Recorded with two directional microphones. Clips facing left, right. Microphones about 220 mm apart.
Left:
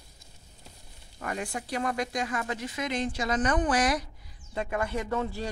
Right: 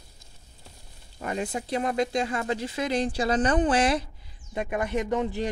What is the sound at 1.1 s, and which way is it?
Speech, 25° right (ahead or behind).